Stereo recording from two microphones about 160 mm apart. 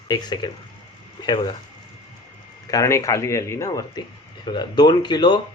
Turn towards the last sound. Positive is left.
turn(degrees=25)  # may be behind; listen again after turning